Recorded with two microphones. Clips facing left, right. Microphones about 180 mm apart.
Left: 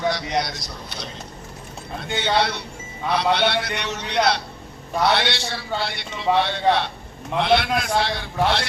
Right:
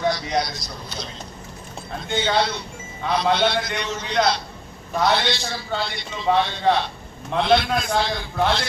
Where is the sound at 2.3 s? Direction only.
65° left (ahead or behind).